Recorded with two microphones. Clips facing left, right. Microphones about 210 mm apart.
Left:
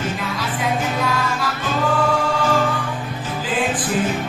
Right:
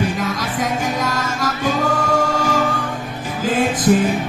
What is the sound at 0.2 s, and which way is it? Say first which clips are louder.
Music: right 3 dB; 45° right (ahead or behind).